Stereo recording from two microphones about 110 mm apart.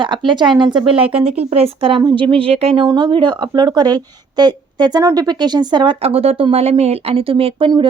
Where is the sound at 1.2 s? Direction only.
70° right (ahead or behind).